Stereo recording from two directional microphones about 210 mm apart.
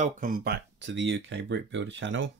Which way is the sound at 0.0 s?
40° right (ahead or behind).